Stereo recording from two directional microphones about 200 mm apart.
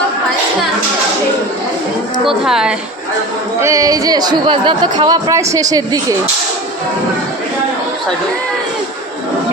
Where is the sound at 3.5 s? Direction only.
15° right (ahead or behind).